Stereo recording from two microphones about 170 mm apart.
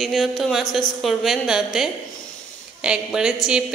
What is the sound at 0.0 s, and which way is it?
A woman's voice, centre (ahead or behind).